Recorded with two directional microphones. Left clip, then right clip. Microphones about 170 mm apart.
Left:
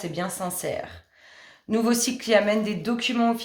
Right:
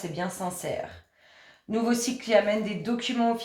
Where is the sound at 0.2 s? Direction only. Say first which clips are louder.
Left 2 dB; 50° left (ahead or behind).